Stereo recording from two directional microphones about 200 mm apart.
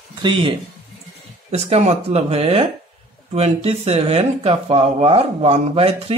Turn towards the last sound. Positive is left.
turn(degrees=-30)  # may be behind; listen again after turning